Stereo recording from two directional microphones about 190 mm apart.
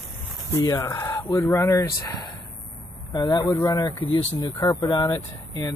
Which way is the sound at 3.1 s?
20° left (ahead or behind).